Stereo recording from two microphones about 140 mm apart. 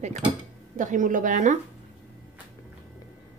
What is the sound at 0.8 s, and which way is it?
Speech, 65° right (ahead or behind).